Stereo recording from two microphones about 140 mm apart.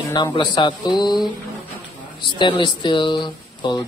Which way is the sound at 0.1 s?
30° left (ahead or behind).